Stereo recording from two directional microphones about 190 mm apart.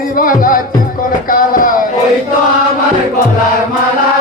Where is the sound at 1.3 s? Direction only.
45° left (ahead or behind).